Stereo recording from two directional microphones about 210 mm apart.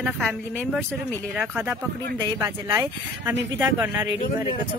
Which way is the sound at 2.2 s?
10° right (ahead or behind).